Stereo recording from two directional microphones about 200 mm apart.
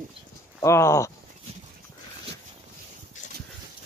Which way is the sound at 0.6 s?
15° left (ahead or behind).